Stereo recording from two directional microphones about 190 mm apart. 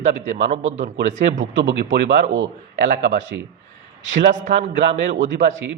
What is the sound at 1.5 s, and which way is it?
A man's voice, 80° right.